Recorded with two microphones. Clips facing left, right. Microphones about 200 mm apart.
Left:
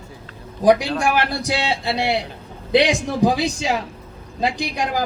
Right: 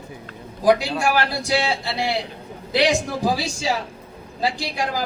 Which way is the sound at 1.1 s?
20° left (ahead or behind).